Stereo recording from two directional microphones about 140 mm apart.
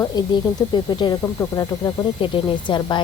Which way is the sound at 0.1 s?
30° left (ahead or behind).